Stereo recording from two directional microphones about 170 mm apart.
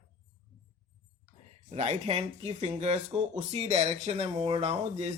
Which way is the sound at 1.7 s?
40° right (ahead or behind).